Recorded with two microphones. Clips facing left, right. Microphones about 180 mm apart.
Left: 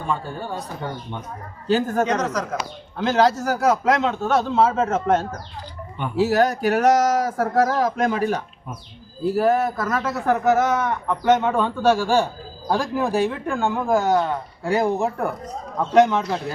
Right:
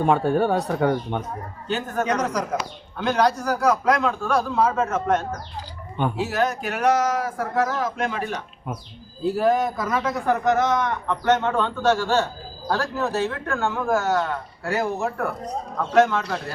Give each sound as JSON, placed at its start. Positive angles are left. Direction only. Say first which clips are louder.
{"t": 0.0, "sound": "speech", "louder": "right 8 dB", "side_deg": -65}
{"t": 1.6, "sound": "speech", "louder": "left 5 dB", "side_deg": 30}
{"t": 2.1, "sound": "speech", "louder": "even", "side_deg": -10}
{"t": 3.0, "sound": "a man's voice", "louder": "left 2 dB", "side_deg": 25}
{"t": 9.2, "sound": "speech", "louder": "left 1 dB", "side_deg": 5}